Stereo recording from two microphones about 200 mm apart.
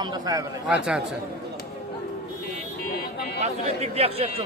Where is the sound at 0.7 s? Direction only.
5° right (ahead or behind).